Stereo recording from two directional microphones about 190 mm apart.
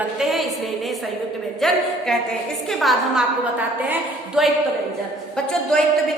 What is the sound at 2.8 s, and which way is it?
A woman's voice, centre (ahead or behind).